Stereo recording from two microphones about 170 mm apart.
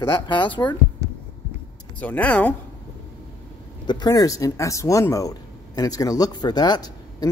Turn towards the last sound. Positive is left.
turn(degrees=25)  # may be behind; listen again after turning